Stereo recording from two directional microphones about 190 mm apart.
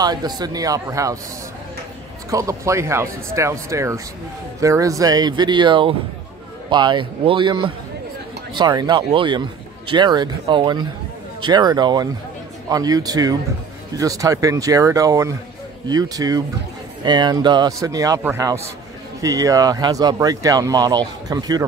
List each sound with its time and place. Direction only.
0.0 s speech: 20° right (ahead or behind)
2.3 s speech: 15° right (ahead or behind)